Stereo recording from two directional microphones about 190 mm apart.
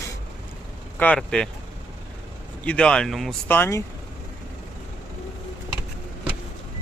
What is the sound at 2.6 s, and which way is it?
Speech, 5° left (ahead or behind).